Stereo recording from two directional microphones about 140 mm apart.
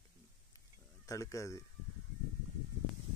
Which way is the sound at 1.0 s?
25° left (ahead or behind).